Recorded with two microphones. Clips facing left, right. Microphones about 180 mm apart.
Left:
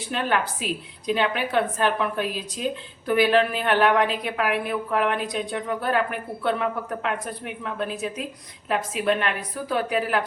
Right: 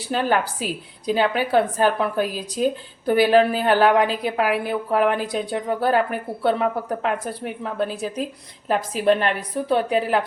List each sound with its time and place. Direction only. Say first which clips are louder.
0.1 s speech: right 4 dB; 35° right (ahead or behind)